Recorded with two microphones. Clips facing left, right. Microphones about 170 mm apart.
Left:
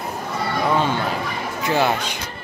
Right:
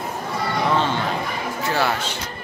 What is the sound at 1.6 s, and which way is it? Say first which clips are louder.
Speech: left 3 dB; 15° left (ahead or behind).